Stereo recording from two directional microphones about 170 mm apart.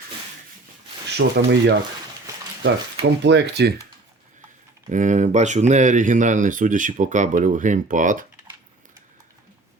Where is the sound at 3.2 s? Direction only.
85° right.